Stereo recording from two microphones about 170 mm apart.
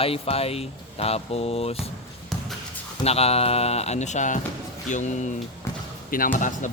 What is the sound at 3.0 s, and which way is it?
Speech, 35° left (ahead or behind).